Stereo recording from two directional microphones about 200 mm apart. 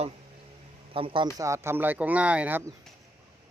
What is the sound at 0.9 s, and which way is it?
Speech, 25° right (ahead or behind).